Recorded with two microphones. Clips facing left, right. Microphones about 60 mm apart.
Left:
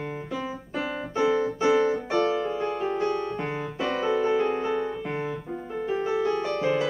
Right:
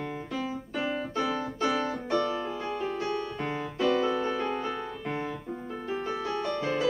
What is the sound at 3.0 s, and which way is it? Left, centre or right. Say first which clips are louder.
Music: left 5 dB; left.